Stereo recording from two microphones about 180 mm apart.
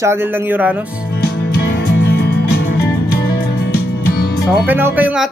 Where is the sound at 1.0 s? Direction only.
65° left (ahead or behind).